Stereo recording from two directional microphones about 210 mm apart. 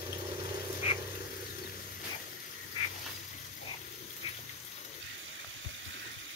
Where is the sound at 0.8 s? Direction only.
30° left (ahead or behind).